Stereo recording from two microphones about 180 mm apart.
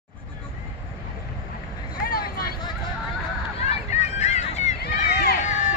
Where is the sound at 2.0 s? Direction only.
55° left (ahead or behind).